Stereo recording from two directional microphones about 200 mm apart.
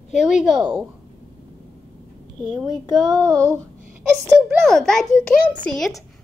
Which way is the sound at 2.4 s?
Centre (ahead or behind).